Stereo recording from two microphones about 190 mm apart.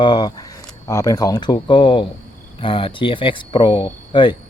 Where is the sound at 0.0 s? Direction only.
25° left (ahead or behind).